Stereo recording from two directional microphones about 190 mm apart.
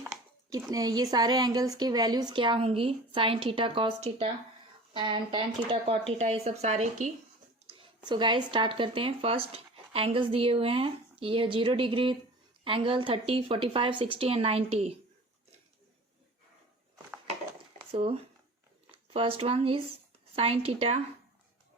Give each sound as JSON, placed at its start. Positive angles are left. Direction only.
{"t": 0.7, "sound": "speech", "side_deg": -20}
{"t": 7.7, "sound": "speech", "side_deg": -25}
{"t": 17.9, "sound": "speech", "side_deg": -30}